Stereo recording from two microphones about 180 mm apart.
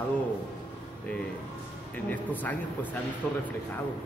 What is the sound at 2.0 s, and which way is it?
A man's voice, 10° left (ahead or behind).